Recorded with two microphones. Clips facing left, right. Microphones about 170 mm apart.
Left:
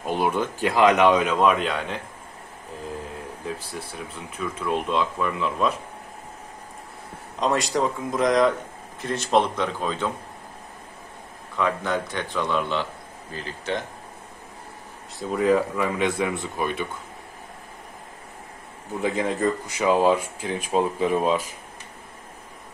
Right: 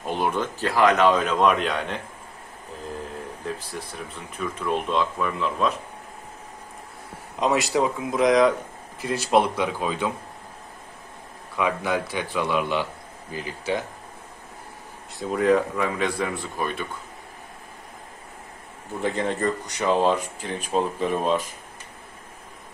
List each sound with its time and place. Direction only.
0.0 s speech: 10° left (ahead or behind)
4.4 s speech: centre (ahead or behind)
7.3 s speech: 5° right (ahead or behind)
11.5 s speech: 10° right (ahead or behind)
15.1 s speech: centre (ahead or behind)
18.9 s speech: centre (ahead or behind)